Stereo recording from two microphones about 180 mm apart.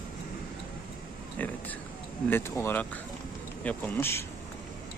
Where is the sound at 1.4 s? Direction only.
10° left (ahead or behind).